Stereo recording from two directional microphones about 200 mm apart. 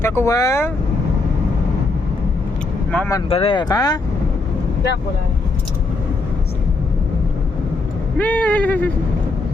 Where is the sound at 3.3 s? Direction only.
25° left (ahead or behind).